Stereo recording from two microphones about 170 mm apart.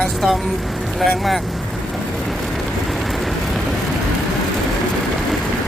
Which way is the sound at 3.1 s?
Centre (ahead or behind).